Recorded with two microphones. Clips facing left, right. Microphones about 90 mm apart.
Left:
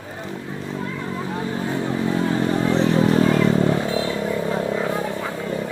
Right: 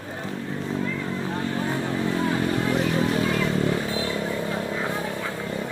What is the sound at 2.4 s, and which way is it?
Vehicle, 30° left (ahead or behind).